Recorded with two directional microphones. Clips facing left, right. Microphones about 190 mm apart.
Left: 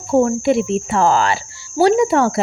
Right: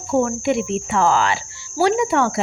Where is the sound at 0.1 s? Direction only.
35° left (ahead or behind).